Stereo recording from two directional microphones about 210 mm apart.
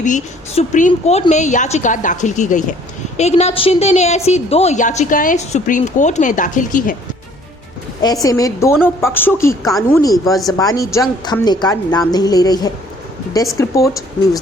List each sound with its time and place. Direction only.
0.0 s a woman's voice: 35° left (ahead or behind)
8.0 s a woman's voice: 15° left (ahead or behind)